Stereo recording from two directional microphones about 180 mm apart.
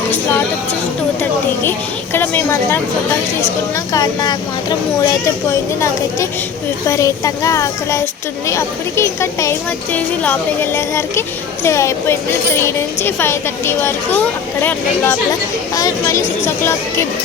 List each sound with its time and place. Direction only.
2.1 s speech: 10° left (ahead or behind)
3.9 s speech: 20° left (ahead or behind)